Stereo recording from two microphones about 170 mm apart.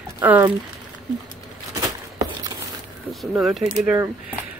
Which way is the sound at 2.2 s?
25° right (ahead or behind).